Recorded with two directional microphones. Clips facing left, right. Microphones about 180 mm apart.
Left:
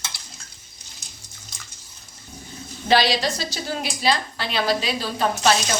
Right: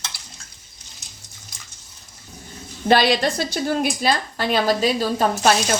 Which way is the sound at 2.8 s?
55° right (ahead or behind).